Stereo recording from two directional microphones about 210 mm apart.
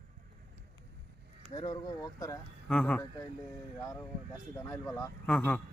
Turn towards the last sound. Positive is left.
turn(degrees=5)  # may be behind; listen again after turning